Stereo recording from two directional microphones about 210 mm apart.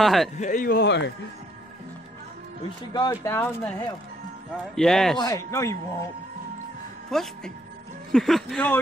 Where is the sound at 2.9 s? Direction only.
15° left (ahead or behind).